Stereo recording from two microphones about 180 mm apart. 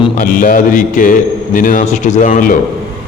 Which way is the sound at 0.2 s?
50° left (ahead or behind).